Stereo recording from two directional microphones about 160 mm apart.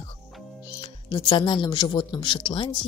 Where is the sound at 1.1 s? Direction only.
30° left (ahead or behind).